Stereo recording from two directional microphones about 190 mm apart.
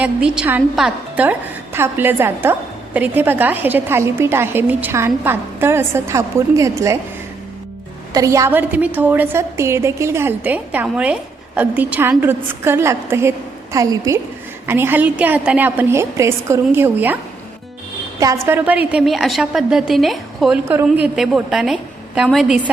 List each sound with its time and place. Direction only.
0.0 s a woman's voice: 5° right (ahead or behind)
8.1 s a woman's voice: 15° right (ahead or behind)
18.2 s a woman's voice: 15° right (ahead or behind)